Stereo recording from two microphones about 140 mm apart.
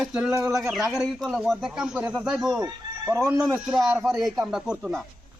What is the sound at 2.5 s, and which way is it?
Speech, 20° right (ahead or behind).